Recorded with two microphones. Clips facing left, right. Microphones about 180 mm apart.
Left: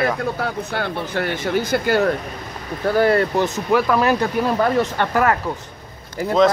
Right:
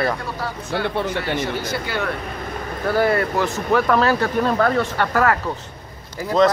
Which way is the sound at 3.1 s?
25° left (ahead or behind).